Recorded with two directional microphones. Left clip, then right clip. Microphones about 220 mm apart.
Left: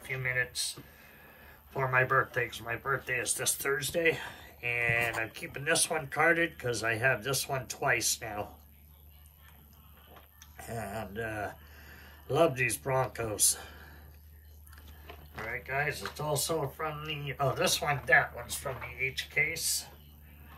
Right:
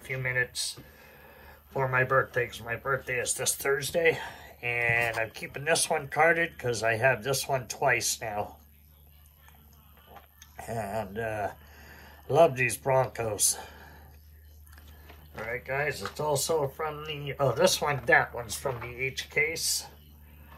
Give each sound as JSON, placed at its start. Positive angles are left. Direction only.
{"t": 0.0, "sound": "speech", "side_deg": 0}
{"t": 10.6, "sound": "speech", "side_deg": 10}
{"t": 15.3, "sound": "speech", "side_deg": 5}